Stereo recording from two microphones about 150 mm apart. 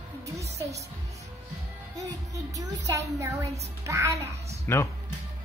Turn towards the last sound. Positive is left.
turn(degrees=15)  # may be behind; listen again after turning